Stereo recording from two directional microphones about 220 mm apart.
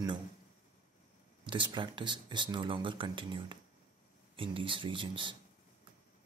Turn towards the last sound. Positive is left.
turn(degrees=-20)  # may be behind; listen again after turning